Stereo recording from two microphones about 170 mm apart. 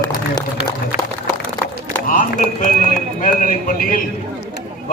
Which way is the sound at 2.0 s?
50° left (ahead or behind).